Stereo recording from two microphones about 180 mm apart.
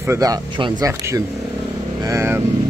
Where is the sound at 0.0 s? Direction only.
15° right (ahead or behind).